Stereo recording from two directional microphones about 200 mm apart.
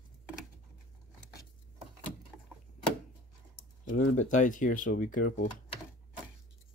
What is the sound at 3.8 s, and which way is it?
Speech, 40° left (ahead or behind).